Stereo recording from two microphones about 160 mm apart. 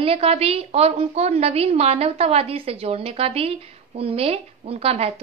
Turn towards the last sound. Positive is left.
turn(degrees=-40)  # may be behind; listen again after turning